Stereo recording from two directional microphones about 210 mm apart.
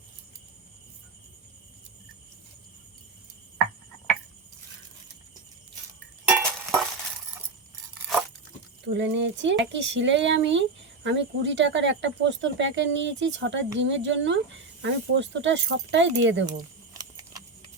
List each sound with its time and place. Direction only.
6.2 s cutlery: 5° right (ahead or behind)
8.8 s speech: 60° right (ahead or behind)
16.9 s a sound: 15° right (ahead or behind)